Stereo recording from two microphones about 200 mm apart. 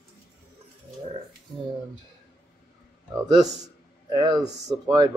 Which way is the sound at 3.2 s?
20° right (ahead or behind).